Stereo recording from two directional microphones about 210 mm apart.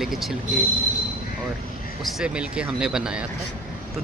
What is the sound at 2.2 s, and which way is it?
Speech, 5° right (ahead or behind).